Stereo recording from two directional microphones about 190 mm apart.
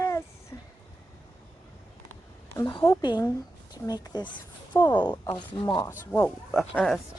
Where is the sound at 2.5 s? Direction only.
20° left (ahead or behind).